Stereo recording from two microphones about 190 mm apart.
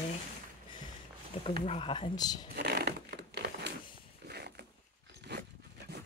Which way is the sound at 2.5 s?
55° right (ahead or behind).